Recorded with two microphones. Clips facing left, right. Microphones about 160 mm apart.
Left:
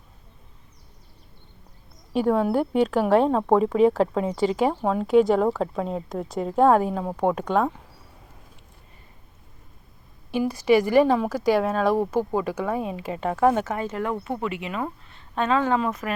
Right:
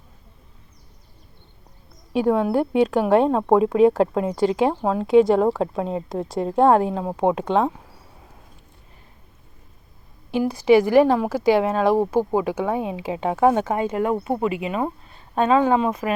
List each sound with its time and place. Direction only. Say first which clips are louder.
2.1 s speech: right 2 dB; centre (ahead or behind)
7.1 s speech: right 3 dB; 20° right (ahead or behind)
10.3 s a woman's voice: right 3 dB; 15° right (ahead or behind)
14.3 s speech: right 5 dB; 30° right (ahead or behind)
15.4 s speech: right 4 dB; 15° right (ahead or behind)